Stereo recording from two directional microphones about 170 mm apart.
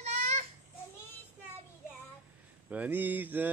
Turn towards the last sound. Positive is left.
turn(degrees=-10)  # may be behind; listen again after turning